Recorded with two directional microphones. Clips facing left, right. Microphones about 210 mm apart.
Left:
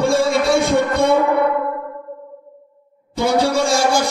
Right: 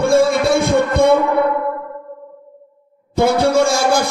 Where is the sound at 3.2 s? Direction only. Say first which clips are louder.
Right 3 dB; 55° right (ahead or behind).